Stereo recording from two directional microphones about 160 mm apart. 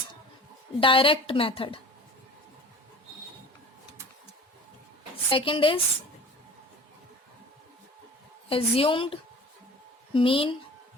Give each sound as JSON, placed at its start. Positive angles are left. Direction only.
{"t": 0.8, "sound": "a woman's voice", "side_deg": 30}
{"t": 5.3, "sound": "a woman's voice", "side_deg": 35}
{"t": 8.4, "sound": "a woman's voice", "side_deg": 35}